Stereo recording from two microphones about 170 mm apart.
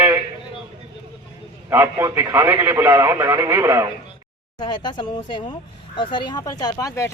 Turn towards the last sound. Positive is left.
turn(degrees=20)  # may be behind; listen again after turning